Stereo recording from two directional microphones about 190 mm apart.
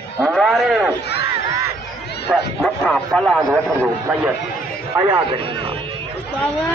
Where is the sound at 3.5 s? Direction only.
10° right (ahead or behind).